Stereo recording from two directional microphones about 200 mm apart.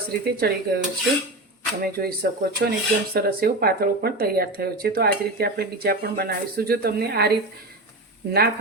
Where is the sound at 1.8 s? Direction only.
50° right (ahead or behind).